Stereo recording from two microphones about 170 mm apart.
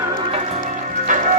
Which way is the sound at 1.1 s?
50° right (ahead or behind).